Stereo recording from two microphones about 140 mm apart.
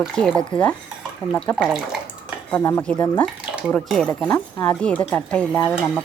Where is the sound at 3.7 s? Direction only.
5° left (ahead or behind).